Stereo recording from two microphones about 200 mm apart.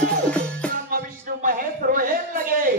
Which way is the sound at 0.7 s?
45° right (ahead or behind).